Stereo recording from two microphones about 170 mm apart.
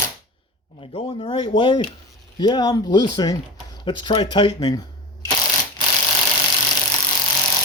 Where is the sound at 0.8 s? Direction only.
30° left (ahead or behind).